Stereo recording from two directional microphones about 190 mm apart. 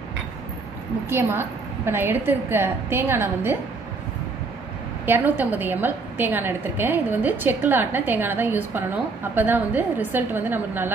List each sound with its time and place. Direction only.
1.0 s a woman's voice: 10° right (ahead or behind)
5.0 s a woman's voice: 10° right (ahead or behind)